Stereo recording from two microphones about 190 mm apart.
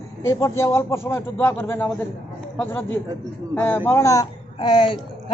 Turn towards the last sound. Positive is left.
turn(degrees=25)  # may be behind; listen again after turning